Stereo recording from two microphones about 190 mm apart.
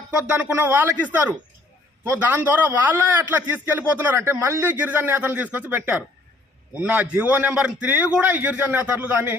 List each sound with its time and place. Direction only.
0.3 s speech: 10° right (ahead or behind)